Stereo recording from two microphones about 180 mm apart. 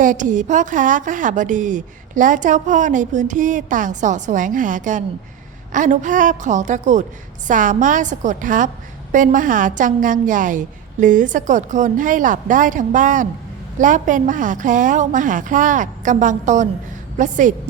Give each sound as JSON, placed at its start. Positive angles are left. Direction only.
{"t": 0.0, "sound": "a woman's voice", "side_deg": -45}